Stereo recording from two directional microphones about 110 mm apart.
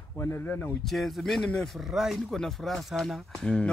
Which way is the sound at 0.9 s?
Centre (ahead or behind).